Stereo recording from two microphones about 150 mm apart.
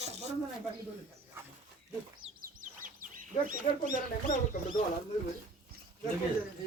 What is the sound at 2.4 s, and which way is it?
Bird, 65° right (ahead or behind).